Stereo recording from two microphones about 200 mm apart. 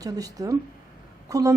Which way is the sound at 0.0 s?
20° right (ahead or behind).